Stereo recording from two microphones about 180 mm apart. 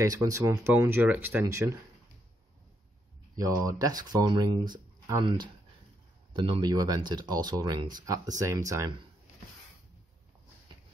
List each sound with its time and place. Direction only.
0.0 s speech: 20° right (ahead or behind)
3.3 s speech: 20° right (ahead or behind)
6.3 s speech: 25° right (ahead or behind)